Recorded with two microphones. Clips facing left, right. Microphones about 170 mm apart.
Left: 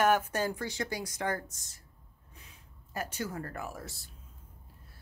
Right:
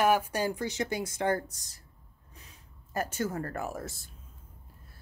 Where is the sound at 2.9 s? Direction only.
45° right (ahead or behind).